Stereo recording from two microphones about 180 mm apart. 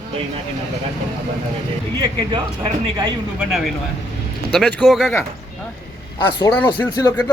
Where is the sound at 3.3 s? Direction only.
Centre (ahead or behind).